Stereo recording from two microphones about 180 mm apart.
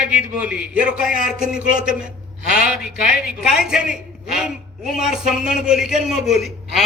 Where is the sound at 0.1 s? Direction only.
5° right (ahead or behind).